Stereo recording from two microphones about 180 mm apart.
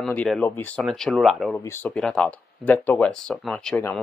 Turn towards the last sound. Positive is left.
turn(degrees=0)  # may be behind; listen again after turning